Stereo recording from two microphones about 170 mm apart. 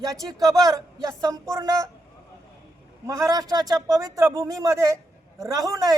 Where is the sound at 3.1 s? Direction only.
20° right (ahead or behind).